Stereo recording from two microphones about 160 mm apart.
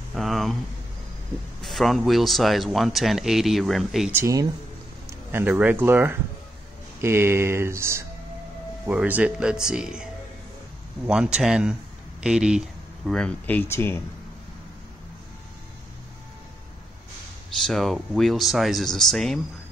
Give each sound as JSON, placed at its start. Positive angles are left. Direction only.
{"t": 0.1, "sound": "a sound", "side_deg": 0}
{"t": 1.6, "sound": "speech", "side_deg": 0}
{"t": 4.1, "sound": "speech", "side_deg": -20}
{"t": 11.1, "sound": "speech", "side_deg": -5}
{"t": 17.6, "sound": "speech", "side_deg": 0}